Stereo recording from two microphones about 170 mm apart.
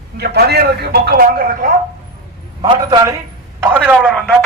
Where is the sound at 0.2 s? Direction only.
70° right (ahead or behind).